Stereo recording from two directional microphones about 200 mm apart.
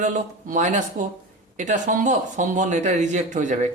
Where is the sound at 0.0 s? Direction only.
40° right (ahead or behind).